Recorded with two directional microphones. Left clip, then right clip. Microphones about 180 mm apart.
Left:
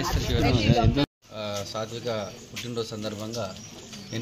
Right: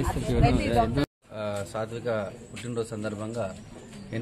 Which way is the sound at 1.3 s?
5° right (ahead or behind).